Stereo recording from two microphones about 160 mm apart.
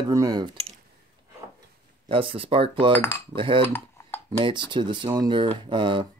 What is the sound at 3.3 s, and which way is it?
Speech, 30° right (ahead or behind).